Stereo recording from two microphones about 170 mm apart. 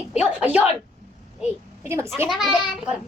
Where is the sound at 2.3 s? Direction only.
Centre (ahead or behind).